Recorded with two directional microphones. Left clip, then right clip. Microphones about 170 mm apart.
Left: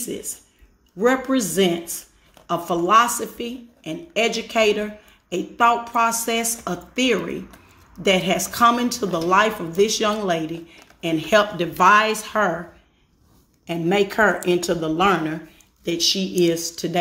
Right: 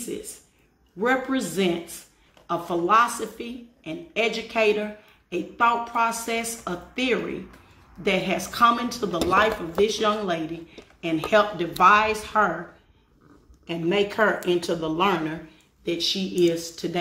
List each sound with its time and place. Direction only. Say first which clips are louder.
0.9 s speech: left 4 dB; 40° left (ahead or behind)
13.7 s speech: left 3 dB; 50° left (ahead or behind)